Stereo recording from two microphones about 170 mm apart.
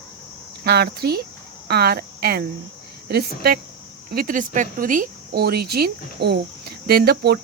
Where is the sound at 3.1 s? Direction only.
70° right (ahead or behind).